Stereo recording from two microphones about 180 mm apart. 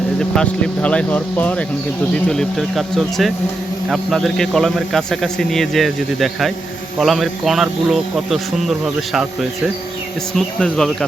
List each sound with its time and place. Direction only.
0.2 s a man's voice: 5° left (ahead or behind)